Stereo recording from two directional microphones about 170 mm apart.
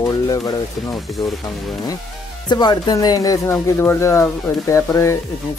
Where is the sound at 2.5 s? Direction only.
25° left (ahead or behind).